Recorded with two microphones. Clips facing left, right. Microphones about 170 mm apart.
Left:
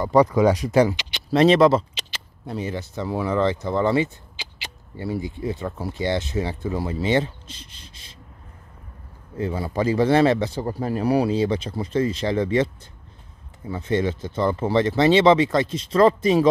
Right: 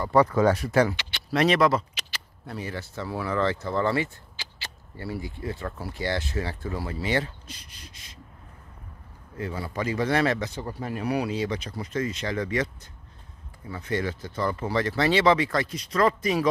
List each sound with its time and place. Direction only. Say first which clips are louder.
0.0 s speech: left 4 dB; 15° left (ahead or behind)
9.4 s speech: left 6 dB; 25° left (ahead or behind)
13.7 s speech: left 6 dB; 25° left (ahead or behind)